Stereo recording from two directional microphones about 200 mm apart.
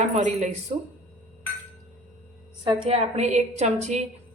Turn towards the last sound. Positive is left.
turn(degrees=-35)  # may be behind; listen again after turning